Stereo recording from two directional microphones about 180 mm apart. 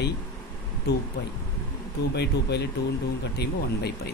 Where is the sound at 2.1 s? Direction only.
65° left (ahead or behind).